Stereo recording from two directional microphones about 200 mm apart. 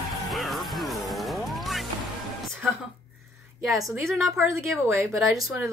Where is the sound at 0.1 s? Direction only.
Centre (ahead or behind).